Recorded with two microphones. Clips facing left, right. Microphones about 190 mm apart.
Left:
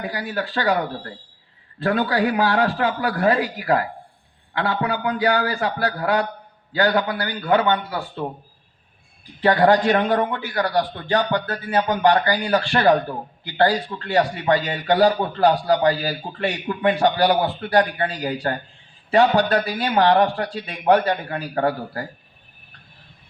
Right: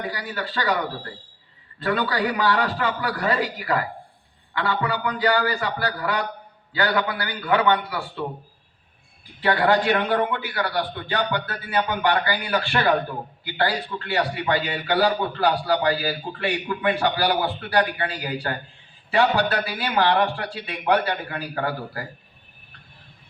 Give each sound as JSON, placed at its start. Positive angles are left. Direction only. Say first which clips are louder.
{"t": 0.1, "sound": "a man's voice", "louder": "left 4 dB", "side_deg": 45}
{"t": 1.8, "sound": "a man's voice", "louder": "left 3 dB", "side_deg": 45}
{"t": 9.4, "sound": "a man's voice", "louder": "left 4 dB", "side_deg": 40}